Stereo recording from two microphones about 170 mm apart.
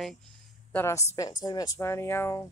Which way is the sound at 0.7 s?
15° left (ahead or behind).